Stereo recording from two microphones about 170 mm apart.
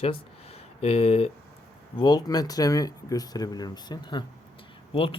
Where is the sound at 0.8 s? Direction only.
40° left (ahead or behind).